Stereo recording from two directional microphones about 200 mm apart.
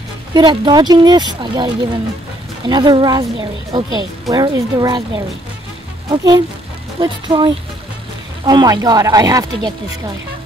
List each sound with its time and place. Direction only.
0.3 s a woman's voice: 20° right (ahead or behind)